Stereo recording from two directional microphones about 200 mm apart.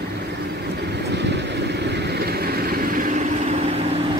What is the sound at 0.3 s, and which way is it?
Vehicle, 55° right (ahead or behind).